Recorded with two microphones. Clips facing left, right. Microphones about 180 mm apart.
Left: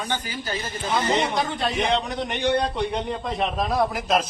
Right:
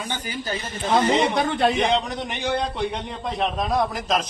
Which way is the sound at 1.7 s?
Centre (ahead or behind).